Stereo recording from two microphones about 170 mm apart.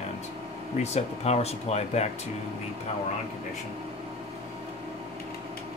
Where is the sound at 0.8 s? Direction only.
40° left (ahead or behind).